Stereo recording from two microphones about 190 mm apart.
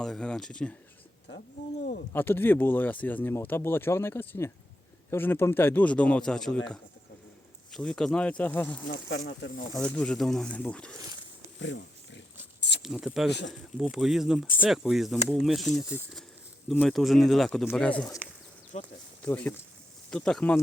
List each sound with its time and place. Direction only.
0.0 s speech: 5° left (ahead or behind)
2.1 s speech: 10° left (ahead or behind)
7.7 s speech: 5° left (ahead or behind)
9.0 s speech: 65° left (ahead or behind)
9.8 s speech: 5° left (ahead or behind)
10.9 s speech: 20° right (ahead or behind)
11.6 s a sound: 70° left (ahead or behind)
12.8 s speech: 5° right (ahead or behind)
18.2 s speech: 10° right (ahead or behind)
18.7 s speech: 40° left (ahead or behind)
19.2 s speech: 10° left (ahead or behind)